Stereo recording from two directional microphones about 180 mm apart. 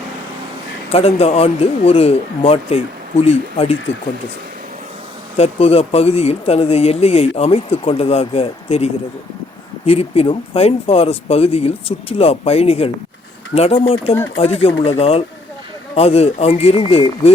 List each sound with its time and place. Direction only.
0.9 s speech: 35° left (ahead or behind)
5.4 s speech: 35° left (ahead or behind)